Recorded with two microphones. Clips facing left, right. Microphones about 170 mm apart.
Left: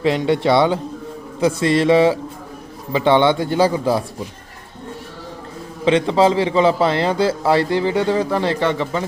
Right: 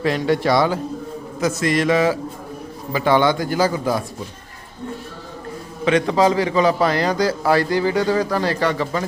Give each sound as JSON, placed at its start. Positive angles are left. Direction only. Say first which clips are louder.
{"t": 0.0, "sound": "a man's voice", "louder": "left 2 dB", "side_deg": 20}
{"t": 5.8, "sound": "a man's voice", "louder": "left 2 dB", "side_deg": 25}